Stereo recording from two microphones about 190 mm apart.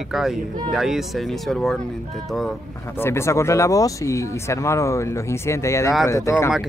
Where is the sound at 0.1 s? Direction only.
Centre (ahead or behind).